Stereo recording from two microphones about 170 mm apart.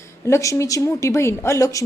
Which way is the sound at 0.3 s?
15° left (ahead or behind).